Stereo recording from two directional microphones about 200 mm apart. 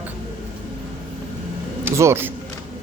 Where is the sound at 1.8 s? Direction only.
10° right (ahead or behind).